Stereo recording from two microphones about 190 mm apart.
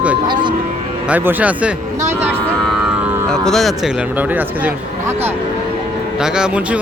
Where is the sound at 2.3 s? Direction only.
Centre (ahead or behind).